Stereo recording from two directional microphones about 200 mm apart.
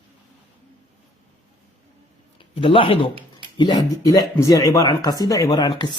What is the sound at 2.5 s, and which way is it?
Speech, 25° left (ahead or behind).